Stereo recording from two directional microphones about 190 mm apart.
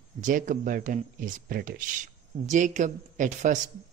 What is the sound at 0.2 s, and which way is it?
Speech, 45° right (ahead or behind).